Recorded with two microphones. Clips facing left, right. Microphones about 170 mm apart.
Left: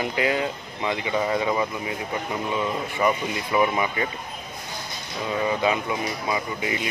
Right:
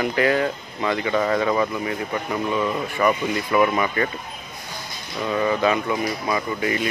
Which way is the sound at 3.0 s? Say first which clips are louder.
Right 3 dB; 20° left (ahead or behind).